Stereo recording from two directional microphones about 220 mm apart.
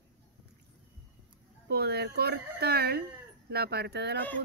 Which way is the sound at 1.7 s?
45° right (ahead or behind).